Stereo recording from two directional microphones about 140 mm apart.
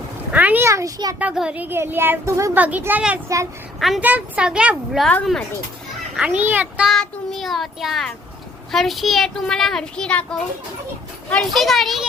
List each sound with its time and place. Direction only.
0.3 s a child's voice: 10° right (ahead or behind)
1.2 s a woman's voice: 5° right (ahead or behind)
6.1 s speech: 10° right (ahead or behind)
6.9 s a child's voice: 5° left (ahead or behind)